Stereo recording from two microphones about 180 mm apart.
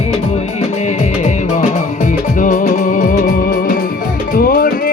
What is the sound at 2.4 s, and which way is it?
Music, 45° left (ahead or behind).